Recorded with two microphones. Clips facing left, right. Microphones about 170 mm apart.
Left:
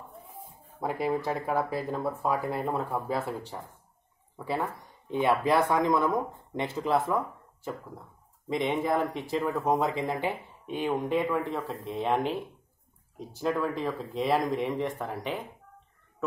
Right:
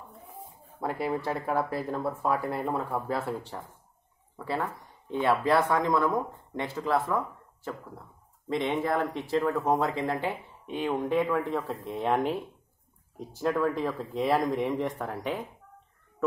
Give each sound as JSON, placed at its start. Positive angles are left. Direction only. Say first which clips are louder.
{"t": 0.8, "sound": "speech", "louder": "left 1 dB", "side_deg": 15}
{"t": 5.1, "sound": "speech", "louder": "even", "side_deg": 15}
{"t": 8.5, "sound": "speech", "louder": "even", "side_deg": 15}
{"t": 13.4, "sound": "speech", "louder": "right 2 dB", "side_deg": 0}